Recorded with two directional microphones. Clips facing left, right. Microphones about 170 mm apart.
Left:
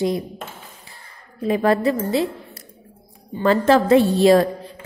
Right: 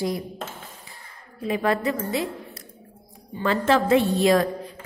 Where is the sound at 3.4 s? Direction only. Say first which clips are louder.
Left 5 dB; 40° left (ahead or behind).